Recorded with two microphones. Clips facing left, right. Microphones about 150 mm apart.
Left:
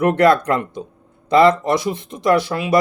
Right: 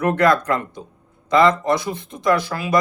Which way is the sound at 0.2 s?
30° left (ahead or behind).